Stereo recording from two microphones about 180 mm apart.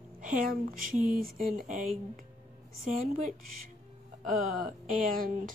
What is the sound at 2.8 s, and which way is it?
Speech, 50° right (ahead or behind).